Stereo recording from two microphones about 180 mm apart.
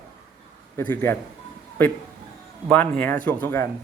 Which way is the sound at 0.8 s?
10° left (ahead or behind).